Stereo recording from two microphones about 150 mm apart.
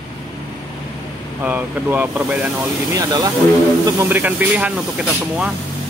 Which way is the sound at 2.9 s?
25° right (ahead or behind).